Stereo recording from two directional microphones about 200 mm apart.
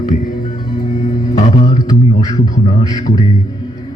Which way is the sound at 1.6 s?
20° left (ahead or behind).